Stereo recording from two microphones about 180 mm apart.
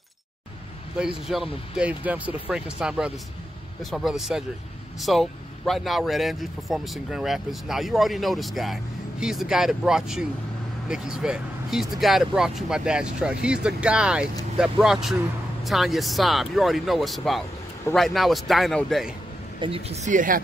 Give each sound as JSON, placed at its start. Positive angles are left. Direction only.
{"t": 0.9, "sound": "speech", "side_deg": -5}
{"t": 19.6, "sound": "speech", "side_deg": -35}